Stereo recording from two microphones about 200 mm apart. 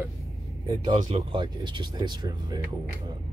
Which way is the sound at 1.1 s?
25° right (ahead or behind).